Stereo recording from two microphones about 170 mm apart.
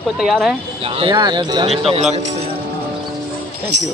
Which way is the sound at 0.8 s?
30° right (ahead or behind).